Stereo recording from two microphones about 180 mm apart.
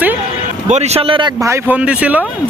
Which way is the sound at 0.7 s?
35° right (ahead or behind).